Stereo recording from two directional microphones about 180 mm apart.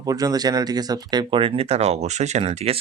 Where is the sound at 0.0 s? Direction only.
20° right (ahead or behind).